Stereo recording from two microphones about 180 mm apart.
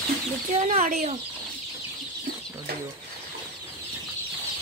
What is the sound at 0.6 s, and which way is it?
Speech, 40° right (ahead or behind).